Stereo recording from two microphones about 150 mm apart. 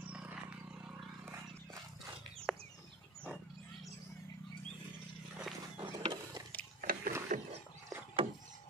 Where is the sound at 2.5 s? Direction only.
5° left (ahead or behind).